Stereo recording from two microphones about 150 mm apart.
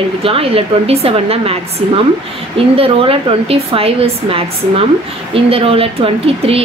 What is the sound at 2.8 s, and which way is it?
A woman's voice, 40° right (ahead or behind).